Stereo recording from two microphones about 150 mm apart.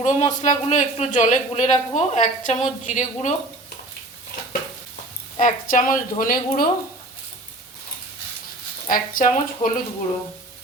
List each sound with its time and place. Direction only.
0.0 s a woman's voice: 50° left (ahead or behind)
5.4 s speech: 60° left (ahead or behind)
8.9 s speech: 65° left (ahead or behind)